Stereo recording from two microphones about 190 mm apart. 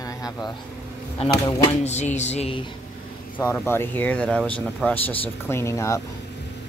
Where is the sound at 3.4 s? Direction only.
15° left (ahead or behind).